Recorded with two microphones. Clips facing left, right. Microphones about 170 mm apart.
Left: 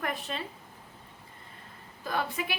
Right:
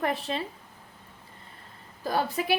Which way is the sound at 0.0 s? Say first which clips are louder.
Right 5 dB; 30° right (ahead or behind).